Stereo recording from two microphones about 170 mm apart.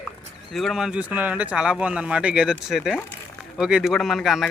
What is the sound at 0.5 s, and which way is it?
A man's voice, centre (ahead or behind).